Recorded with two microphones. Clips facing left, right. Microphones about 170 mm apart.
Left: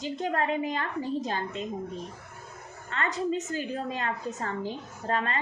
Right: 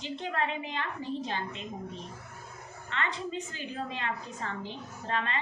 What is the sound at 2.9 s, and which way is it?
A woman's voice, 40° left (ahead or behind).